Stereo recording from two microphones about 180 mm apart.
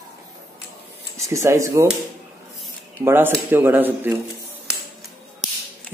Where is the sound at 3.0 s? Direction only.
15° right (ahead or behind).